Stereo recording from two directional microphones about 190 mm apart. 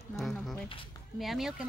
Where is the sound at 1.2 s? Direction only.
Centre (ahead or behind).